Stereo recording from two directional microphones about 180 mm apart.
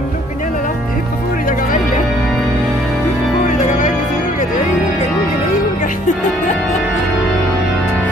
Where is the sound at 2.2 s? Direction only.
5° left (ahead or behind).